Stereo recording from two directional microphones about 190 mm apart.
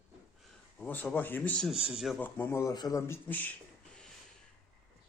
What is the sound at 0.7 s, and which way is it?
Speech, 10° left (ahead or behind).